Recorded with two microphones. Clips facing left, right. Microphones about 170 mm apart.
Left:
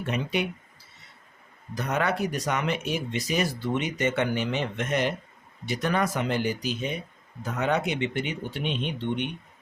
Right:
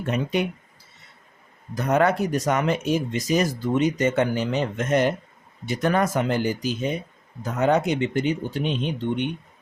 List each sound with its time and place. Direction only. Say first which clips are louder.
0.0 s speech: right 4 dB; 45° right (ahead or behind)
1.7 s speech: right 7 dB; 45° right (ahead or behind)